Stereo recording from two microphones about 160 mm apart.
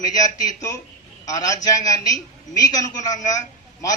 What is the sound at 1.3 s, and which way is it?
A man's voice, 20° left (ahead or behind).